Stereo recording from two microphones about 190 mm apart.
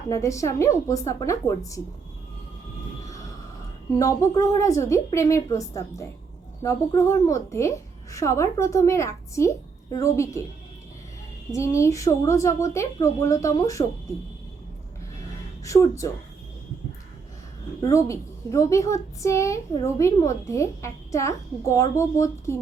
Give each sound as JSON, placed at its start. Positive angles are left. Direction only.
{"t": 0.1, "sound": "a woman's voice", "side_deg": 15}
{"t": 3.9, "sound": "a woman's voice", "side_deg": 15}
{"t": 11.5, "sound": "a woman's voice", "side_deg": 15}
{"t": 15.6, "sound": "a woman's voice", "side_deg": 15}
{"t": 17.8, "sound": "a woman's voice", "side_deg": 15}